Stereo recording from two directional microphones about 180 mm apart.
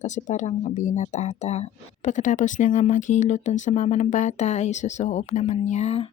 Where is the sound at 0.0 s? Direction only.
40° left (ahead or behind).